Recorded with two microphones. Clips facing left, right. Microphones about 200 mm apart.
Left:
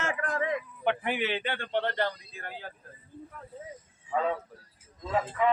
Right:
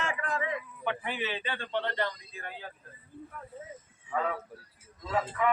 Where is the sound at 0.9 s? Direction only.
65° left (ahead or behind).